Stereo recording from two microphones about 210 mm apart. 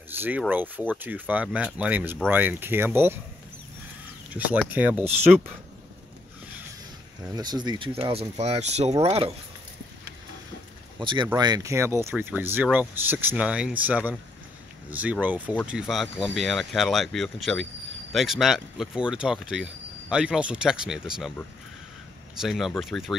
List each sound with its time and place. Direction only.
0.2 s speech: 10° right (ahead or behind)
4.3 s speech: 5° right (ahead or behind)
7.3 s speech: 20° right (ahead or behind)
11.0 s speech: 20° right (ahead or behind); by 21.3 s centre (ahead or behind)
22.4 s speech: centre (ahead or behind)